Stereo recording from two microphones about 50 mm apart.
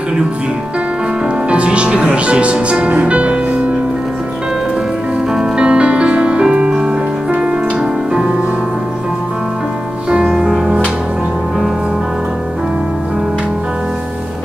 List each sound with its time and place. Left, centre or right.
1.2 s speech: right
2.9 s music: right
5.3 s music: centre
10.0 s music: centre